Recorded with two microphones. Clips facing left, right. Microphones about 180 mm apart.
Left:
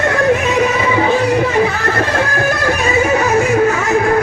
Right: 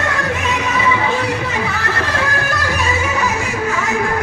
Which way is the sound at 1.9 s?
50° left (ahead or behind).